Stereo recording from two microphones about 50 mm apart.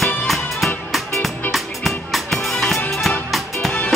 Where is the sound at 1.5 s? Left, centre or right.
Centre.